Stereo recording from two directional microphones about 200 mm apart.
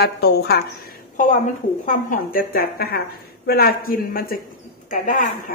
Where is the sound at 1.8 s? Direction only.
45° left (ahead or behind).